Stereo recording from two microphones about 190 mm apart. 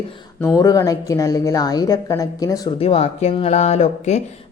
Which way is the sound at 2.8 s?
30° left (ahead or behind).